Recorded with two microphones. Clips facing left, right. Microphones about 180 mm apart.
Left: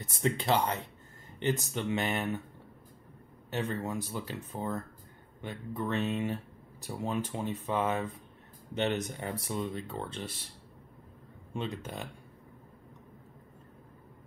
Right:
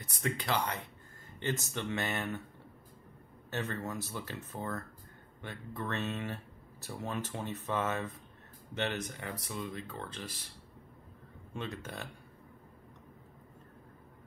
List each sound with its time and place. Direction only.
0.1 s speech: 25° left (ahead or behind)
3.4 s speech: 15° left (ahead or behind)
11.5 s speech: 15° left (ahead or behind)